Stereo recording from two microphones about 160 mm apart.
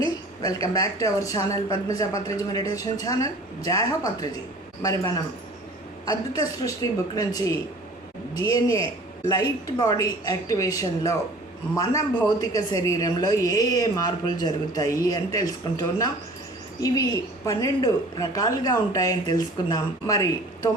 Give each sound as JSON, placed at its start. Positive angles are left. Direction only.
{"t": 0.0, "sound": "a woman's voice", "side_deg": 25}